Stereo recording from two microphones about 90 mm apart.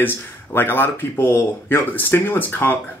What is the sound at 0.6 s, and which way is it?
Speech, 25° left (ahead or behind).